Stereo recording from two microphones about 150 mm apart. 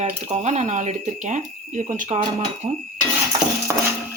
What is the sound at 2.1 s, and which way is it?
Speech, 40° right (ahead or behind).